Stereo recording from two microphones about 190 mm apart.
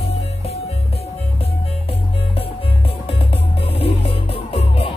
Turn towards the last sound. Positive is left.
turn(degrees=30)  # may be behind; listen again after turning